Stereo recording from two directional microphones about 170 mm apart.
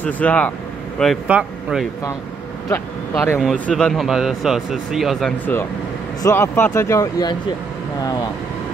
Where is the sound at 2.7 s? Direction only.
15° left (ahead or behind).